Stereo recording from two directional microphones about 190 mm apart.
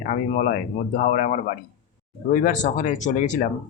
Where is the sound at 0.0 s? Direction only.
45° left (ahead or behind).